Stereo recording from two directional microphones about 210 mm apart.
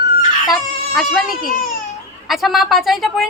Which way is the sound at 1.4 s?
40° left (ahead or behind).